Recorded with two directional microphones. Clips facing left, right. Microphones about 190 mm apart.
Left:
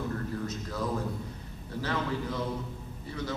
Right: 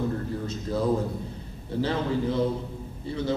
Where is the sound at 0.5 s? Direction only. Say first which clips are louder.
Right 7 dB; 30° right (ahead or behind).